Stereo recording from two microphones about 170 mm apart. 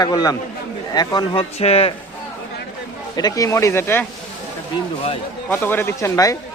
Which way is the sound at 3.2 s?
20° left (ahead or behind).